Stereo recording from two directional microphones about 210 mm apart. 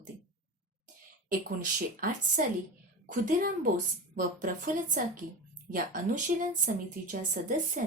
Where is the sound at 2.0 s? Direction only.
40° right (ahead or behind).